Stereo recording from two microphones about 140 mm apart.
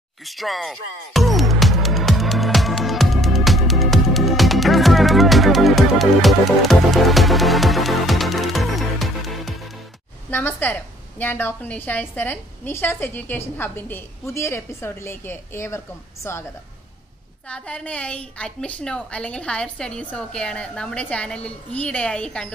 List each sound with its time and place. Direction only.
0.2 s music: centre (ahead or behind)
10.3 s a woman's voice: 15° left (ahead or behind)
17.5 s a woman's voice: 10° left (ahead or behind)